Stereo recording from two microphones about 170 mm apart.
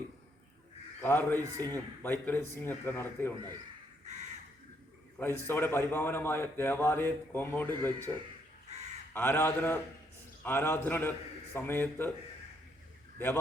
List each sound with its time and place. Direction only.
1.0 s a man's voice: 15° left (ahead or behind)
1.4 s a man's voice: 20° right (ahead or behind)
1.7 s a man's voice: 10° left (ahead or behind)
5.1 s a man's voice: 10° left (ahead or behind)
9.1 s a man's voice: 15° left (ahead or behind)
13.1 s speech: 15° left (ahead or behind)